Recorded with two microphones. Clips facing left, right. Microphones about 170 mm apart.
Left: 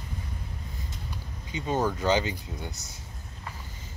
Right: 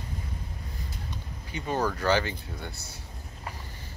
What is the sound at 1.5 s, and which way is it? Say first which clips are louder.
Speech: left 1 dB; 20° left (ahead or behind).